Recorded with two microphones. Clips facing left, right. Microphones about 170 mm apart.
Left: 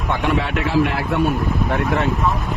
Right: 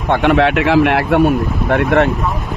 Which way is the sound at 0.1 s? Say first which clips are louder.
Right 9 dB; 75° right (ahead or behind).